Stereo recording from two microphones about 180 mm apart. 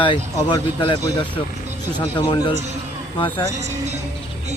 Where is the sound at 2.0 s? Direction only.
20° left (ahead or behind).